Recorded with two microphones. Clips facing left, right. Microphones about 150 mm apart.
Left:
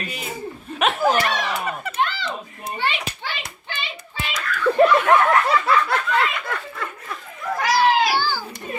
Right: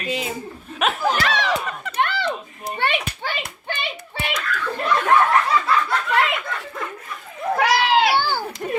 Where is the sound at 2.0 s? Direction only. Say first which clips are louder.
Right 4 dB; 60° right (ahead or behind).